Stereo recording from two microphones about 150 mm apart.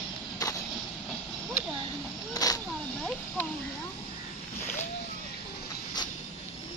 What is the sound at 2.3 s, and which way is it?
Vehicle, 25° left (ahead or behind).